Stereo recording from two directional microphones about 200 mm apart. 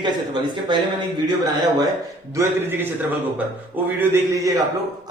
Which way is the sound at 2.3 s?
15° right (ahead or behind).